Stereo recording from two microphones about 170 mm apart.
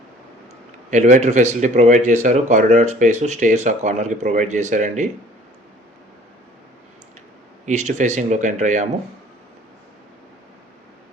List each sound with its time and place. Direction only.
0.9 s speech: 45° right (ahead or behind)
7.6 s speech: 45° right (ahead or behind)